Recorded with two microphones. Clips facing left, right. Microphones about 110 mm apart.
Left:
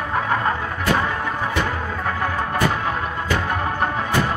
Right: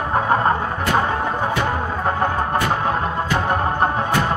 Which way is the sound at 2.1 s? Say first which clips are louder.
Right 4 dB; 35° right (ahead or behind).